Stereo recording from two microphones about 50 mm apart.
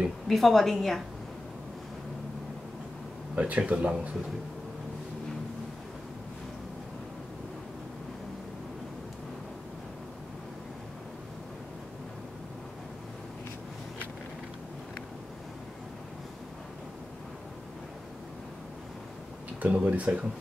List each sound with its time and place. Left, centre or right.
0.3 s a woman's voice: centre
3.3 s speech: right
19.6 s speech: right